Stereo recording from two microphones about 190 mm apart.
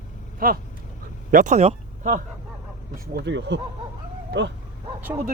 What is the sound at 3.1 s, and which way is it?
Speech, 70° right (ahead or behind).